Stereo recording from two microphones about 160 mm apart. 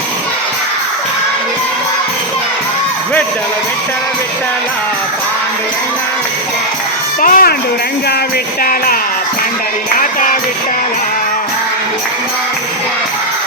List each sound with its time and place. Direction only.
7.2 s music: 60° left (ahead or behind)
10.0 s music: 55° left (ahead or behind)